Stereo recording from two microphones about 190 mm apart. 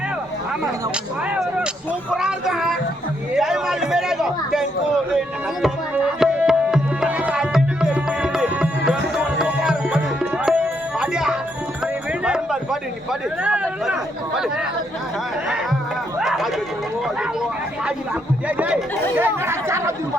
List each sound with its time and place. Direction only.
2.0 s a child's voice: 5° right (ahead or behind)
3.3 s a sound: centre (ahead or behind)
5.6 s tabla: 5° right (ahead or behind)
9.1 s music: 5° right (ahead or behind)
12.2 s a sound: 5° right (ahead or behind)
13.4 s a child's voice: 5° right (ahead or behind)
16.2 s a child's voice: centre (ahead or behind)
18.4 s speech: 5° right (ahead or behind)